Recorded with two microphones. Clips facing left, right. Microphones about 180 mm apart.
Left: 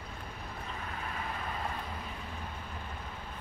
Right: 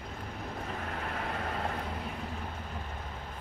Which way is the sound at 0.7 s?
60° right (ahead or behind).